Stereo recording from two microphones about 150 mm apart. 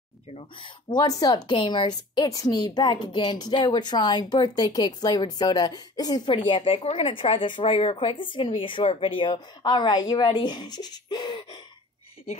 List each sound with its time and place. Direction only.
0.3 s a woman's voice: 35° left (ahead or behind)